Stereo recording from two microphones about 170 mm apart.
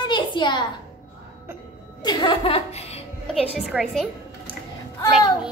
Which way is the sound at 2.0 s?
25° left (ahead or behind).